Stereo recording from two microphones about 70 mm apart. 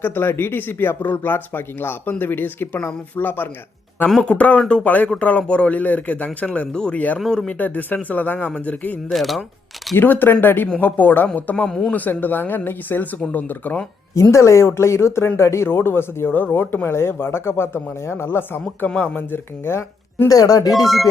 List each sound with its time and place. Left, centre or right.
0.0 s speech: left; by 7.5 s centre
7.6 s speech: left
9.0 s speech: centre
9.9 s speech: left
14.2 s speech: left
18.9 s speech: centre
19.6 s speech: left
20.2 s speech: left
20.7 s speech: centre